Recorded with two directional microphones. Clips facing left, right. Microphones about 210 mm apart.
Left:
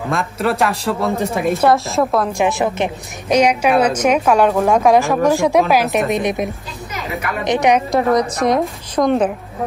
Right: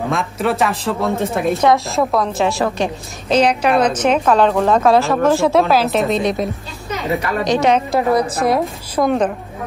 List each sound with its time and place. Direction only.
0.1 s a woman's voice: centre (ahead or behind)
2.3 s a woman's voice: 20° left (ahead or behind)
7.9 s a woman's voice: 5° right (ahead or behind)